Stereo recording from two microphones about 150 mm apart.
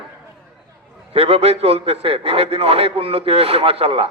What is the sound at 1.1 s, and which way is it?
A man's voice, 40° right (ahead or behind).